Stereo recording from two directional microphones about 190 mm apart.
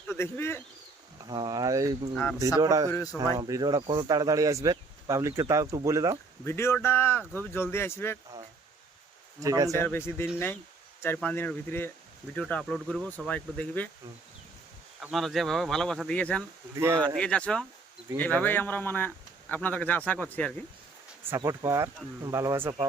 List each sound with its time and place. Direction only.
0.1 s speech: 10° left (ahead or behind)
1.2 s speech: 20° right (ahead or behind)
2.9 s speech: 15° left (ahead or behind)
3.3 s speech: 20° right (ahead or behind)
6.4 s speech: 15° left (ahead or behind)
9.4 s speech: 15° right (ahead or behind)
9.7 s speech: 10° left (ahead or behind)
15.0 s speech: centre (ahead or behind)
16.7 s speech: 15° right (ahead or behind)
17.2 s speech: 5° left (ahead or behind)
21.2 s speech: 15° right (ahead or behind)